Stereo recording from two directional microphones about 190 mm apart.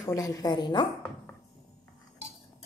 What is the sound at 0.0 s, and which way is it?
Speech, 15° left (ahead or behind).